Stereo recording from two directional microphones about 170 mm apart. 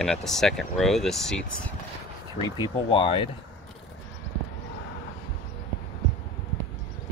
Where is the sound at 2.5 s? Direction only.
30° left (ahead or behind).